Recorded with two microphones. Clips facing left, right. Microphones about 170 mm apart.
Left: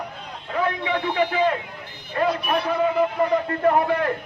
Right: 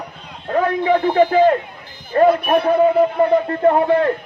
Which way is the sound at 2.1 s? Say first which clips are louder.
Right 9 dB; 50° right (ahead or behind).